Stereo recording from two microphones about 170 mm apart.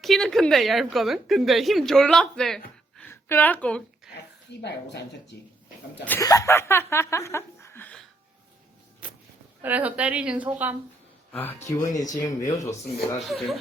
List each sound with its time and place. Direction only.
0.0 s speech: centre (ahead or behind)
3.0 s a sound: 15° left (ahead or behind)
4.6 s speech: 90° left
6.1 s speech: 20° left (ahead or behind)
9.6 s a woman's voice: 10° right (ahead or behind)
11.3 s speech: 10° left (ahead or behind)
13.1 s speech: centre (ahead or behind)